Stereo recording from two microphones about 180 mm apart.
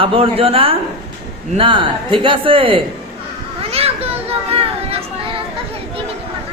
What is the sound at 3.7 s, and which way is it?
Children playing, 35° right (ahead or behind).